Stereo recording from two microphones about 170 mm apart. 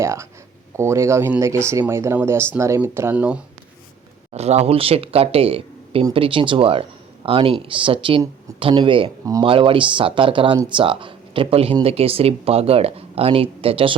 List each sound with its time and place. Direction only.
0.0 s speech: 15° right (ahead or behind)
4.3 s speech: 40° right (ahead or behind)